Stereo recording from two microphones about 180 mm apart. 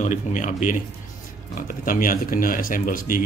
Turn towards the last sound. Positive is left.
turn(degrees=50)  # may be behind; listen again after turning